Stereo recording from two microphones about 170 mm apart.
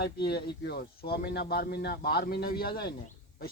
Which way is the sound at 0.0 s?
70° left (ahead or behind).